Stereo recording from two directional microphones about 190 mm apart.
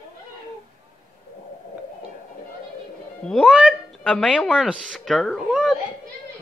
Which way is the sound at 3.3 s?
5° right (ahead or behind).